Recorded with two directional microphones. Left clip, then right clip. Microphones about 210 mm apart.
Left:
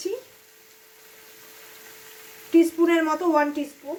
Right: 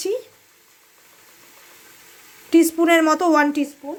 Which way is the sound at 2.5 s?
45° right (ahead or behind).